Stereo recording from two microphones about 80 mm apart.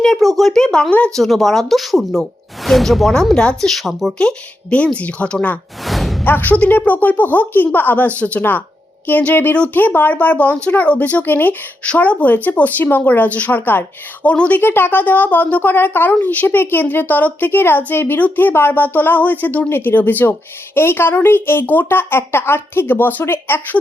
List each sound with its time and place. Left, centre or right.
0.0 s speech: centre
1.2 s speech: centre
4.2 s speech: centre
5.8 s a sound: centre
6.2 s speech: left